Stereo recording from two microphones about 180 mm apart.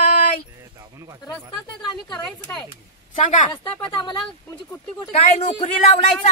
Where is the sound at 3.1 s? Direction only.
45° left (ahead or behind).